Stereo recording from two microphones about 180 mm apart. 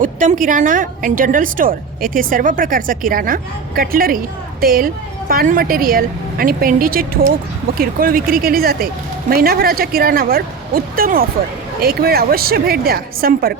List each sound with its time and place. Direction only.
0.0 s a woman's voice: 45° right (ahead or behind)